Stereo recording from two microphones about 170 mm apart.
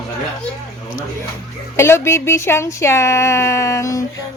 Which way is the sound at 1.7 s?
15° left (ahead or behind).